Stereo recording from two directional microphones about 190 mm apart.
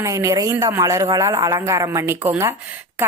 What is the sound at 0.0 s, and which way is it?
Speech, 15° right (ahead or behind).